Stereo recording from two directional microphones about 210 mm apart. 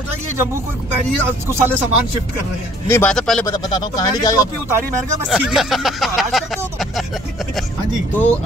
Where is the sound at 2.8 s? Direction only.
10° left (ahead or behind).